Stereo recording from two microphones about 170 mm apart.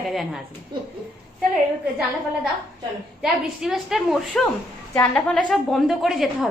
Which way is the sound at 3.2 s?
Centre (ahead or behind).